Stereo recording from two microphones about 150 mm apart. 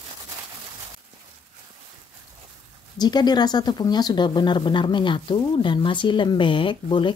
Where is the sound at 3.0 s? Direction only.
30° left (ahead or behind).